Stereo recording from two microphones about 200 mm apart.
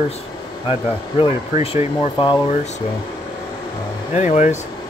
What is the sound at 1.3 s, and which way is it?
Speech, 15° right (ahead or behind).